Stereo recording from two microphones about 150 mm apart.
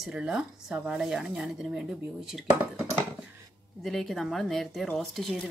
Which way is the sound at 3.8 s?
Centre (ahead or behind).